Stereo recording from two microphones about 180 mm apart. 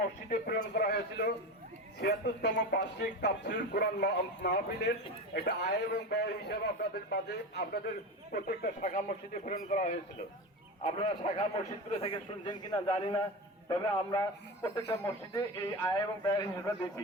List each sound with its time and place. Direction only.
0.0 s a man's voice: 55° left (ahead or behind)
10.8 s a man's voice: 35° left (ahead or behind)
16.2 s a man's voice: 15° left (ahead or behind)